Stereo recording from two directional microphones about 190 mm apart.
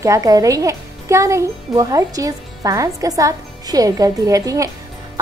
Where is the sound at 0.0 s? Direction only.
15° right (ahead or behind).